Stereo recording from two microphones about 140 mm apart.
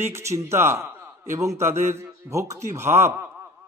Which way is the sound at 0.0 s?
20° right (ahead or behind).